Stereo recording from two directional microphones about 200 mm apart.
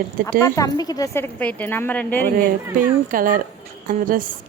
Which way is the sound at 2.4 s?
45° right (ahead or behind).